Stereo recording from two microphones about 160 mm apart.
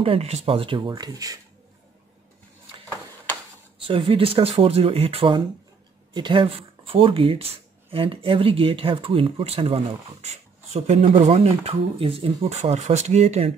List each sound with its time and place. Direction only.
0.0 s speech: 40° right (ahead or behind); by 1.4 s 25° right (ahead or behind)
3.8 s speech: 35° right (ahead or behind)